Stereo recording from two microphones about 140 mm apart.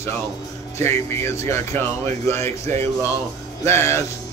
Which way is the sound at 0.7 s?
20° left (ahead or behind).